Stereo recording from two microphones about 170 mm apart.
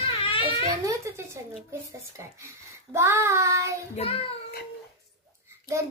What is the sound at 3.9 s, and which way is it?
Speech, 35° left (ahead or behind).